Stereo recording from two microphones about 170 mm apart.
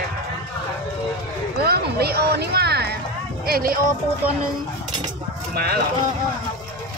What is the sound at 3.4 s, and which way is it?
Speech, 60° right (ahead or behind).